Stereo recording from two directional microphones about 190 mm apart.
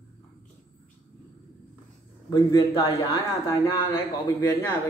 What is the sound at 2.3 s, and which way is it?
A man's voice, 15° left (ahead or behind).